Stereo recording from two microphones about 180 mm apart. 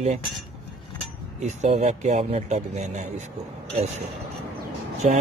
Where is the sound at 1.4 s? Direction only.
40° right (ahead or behind).